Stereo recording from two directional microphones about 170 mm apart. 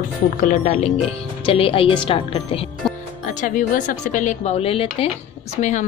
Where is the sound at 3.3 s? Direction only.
55° left (ahead or behind); by 5.0 s 35° left (ahead or behind).